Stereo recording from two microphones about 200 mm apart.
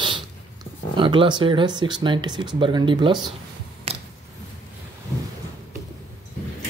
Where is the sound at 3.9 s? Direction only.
30° right (ahead or behind).